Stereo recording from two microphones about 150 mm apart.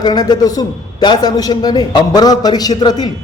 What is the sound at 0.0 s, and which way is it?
A man's voice, 30° left (ahead or behind).